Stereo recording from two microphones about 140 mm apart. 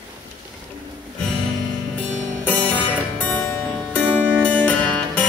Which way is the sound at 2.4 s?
10° left (ahead or behind).